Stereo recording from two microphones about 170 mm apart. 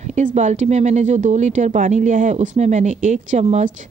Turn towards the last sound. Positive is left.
turn(degrees=-45)  # may be behind; listen again after turning